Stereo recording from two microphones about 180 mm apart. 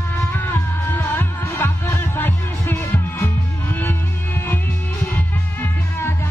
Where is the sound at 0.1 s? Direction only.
15° left (ahead or behind).